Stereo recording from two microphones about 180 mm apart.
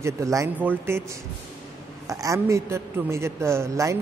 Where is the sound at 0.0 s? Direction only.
15° right (ahead or behind).